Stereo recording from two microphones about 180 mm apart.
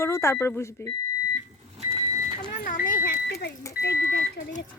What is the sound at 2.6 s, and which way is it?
Vehicle, 50° left (ahead or behind).